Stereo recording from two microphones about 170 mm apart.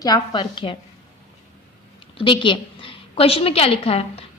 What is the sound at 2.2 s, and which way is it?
A woman's voice, 30° left (ahead or behind).